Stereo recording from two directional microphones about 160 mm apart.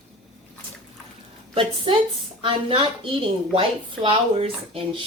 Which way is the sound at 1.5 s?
35° right (ahead or behind).